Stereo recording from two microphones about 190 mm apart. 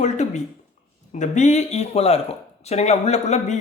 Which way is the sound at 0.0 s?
40° left (ahead or behind).